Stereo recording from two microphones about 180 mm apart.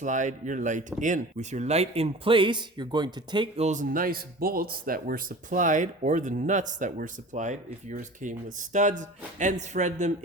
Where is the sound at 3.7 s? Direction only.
50° right (ahead or behind).